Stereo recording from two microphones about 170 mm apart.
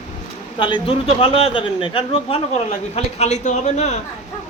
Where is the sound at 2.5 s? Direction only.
40° left (ahead or behind).